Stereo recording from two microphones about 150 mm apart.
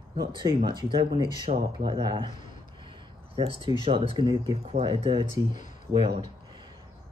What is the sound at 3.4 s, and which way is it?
Speech, 30° right (ahead or behind).